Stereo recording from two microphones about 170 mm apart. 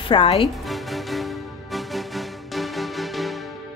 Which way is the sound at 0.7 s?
Centre (ahead or behind).